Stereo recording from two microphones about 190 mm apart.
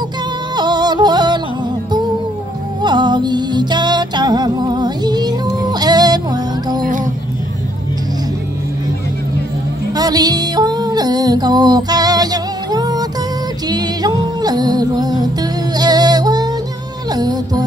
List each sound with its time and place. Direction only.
0.6 s music: 20° right (ahead or behind)
2.8 s music: 25° right (ahead or behind)
9.9 s music: 20° right (ahead or behind)
15.8 s yodeling: 20° right (ahead or behind)
17.1 s music: 20° right (ahead or behind)